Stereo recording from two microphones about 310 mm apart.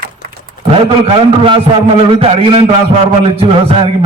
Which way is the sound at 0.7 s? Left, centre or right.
Centre.